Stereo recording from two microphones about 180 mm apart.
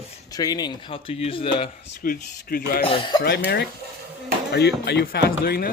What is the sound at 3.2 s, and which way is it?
Speech, 65° left (ahead or behind).